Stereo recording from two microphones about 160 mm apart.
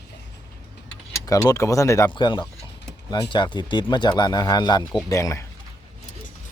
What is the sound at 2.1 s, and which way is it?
Speech, 30° left (ahead or behind).